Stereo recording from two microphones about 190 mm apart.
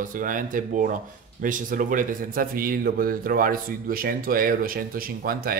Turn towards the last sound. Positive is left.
turn(degrees=-50)  # may be behind; listen again after turning